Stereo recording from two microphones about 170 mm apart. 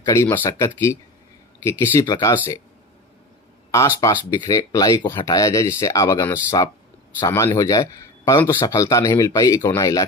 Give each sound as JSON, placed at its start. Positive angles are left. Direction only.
{"t": 0.0, "sound": "speech", "side_deg": 15}
{"t": 4.3, "sound": "a man's voice", "side_deg": 20}